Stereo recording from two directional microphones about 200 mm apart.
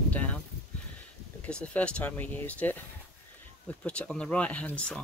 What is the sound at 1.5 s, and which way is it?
Speech, 5° left (ahead or behind).